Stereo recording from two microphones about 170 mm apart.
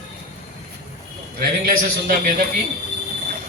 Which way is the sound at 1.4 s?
55° right (ahead or behind).